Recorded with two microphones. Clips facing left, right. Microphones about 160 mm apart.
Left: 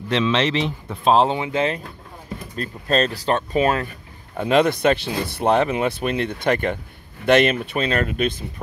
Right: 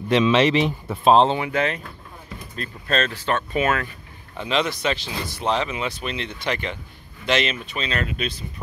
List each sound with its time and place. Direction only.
0.1 s speech: 10° right (ahead or behind)
1.3 s speech: 25° left (ahead or behind)
4.4 s speech: 50° left (ahead or behind)